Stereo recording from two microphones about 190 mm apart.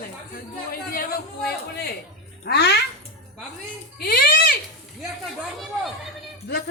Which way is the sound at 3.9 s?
50° left (ahead or behind).